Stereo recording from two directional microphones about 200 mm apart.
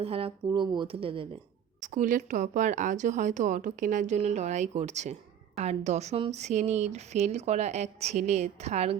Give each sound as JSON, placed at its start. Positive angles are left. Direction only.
{"t": 0.0, "sound": "speech", "side_deg": -30}
{"t": 1.8, "sound": "speech", "side_deg": -40}